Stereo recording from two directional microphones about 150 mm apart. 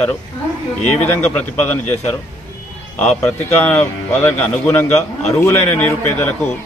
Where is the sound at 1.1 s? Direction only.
10° left (ahead or behind).